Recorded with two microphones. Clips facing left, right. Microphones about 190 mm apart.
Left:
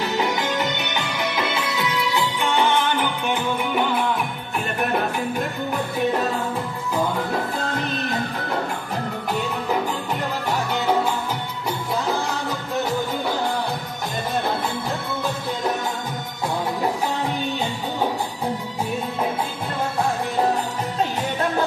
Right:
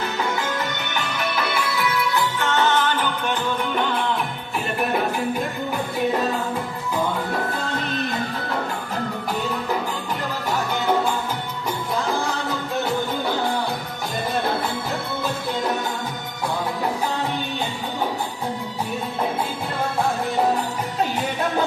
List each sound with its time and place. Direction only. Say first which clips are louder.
0.0 s music: left 2 dB; 20° left (ahead or behind)